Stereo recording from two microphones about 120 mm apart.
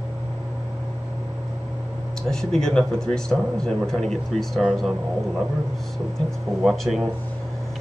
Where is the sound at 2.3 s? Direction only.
5° left (ahead or behind).